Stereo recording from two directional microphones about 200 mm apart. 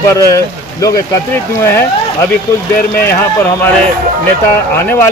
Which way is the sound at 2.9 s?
10° left (ahead or behind).